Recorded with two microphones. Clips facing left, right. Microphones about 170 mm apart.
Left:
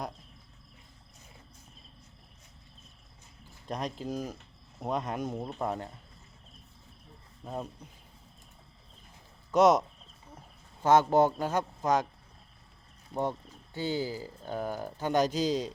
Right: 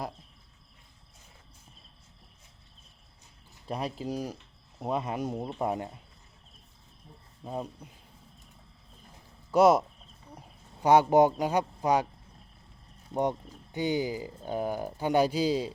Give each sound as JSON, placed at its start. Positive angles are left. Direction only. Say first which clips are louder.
{"t": 3.7, "sound": "speech", "louder": "right 1 dB", "side_deg": -5}
{"t": 7.4, "sound": "speech", "louder": "right 2 dB", "side_deg": -10}
{"t": 9.5, "sound": "speech", "louder": "right 1 dB", "side_deg": -5}
{"t": 10.8, "sound": "speech", "louder": "right 2 dB", "side_deg": -15}
{"t": 13.1, "sound": "speech", "louder": "right 3 dB", "side_deg": -25}
{"t": 13.7, "sound": "speech", "louder": "right 3 dB", "side_deg": -15}